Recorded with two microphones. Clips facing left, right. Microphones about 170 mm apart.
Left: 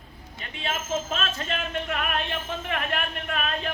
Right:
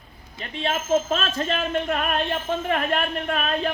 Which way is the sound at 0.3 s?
35° right (ahead or behind).